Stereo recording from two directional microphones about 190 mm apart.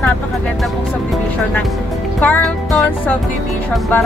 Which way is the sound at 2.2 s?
10° left (ahead or behind).